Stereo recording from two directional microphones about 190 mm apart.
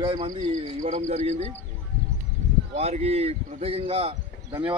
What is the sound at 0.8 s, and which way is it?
Speech, 40° right (ahead or behind).